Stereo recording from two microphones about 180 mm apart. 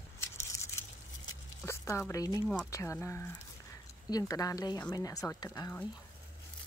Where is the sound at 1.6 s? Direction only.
15° left (ahead or behind).